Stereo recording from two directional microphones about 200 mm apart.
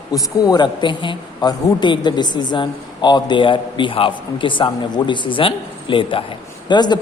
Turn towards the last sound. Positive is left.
turn(degrees=20)  # may be behind; listen again after turning